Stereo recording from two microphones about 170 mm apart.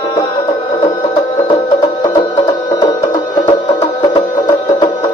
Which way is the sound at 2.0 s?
25° left (ahead or behind).